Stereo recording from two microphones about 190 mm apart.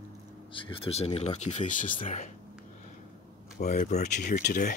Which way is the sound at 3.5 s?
40° left (ahead or behind).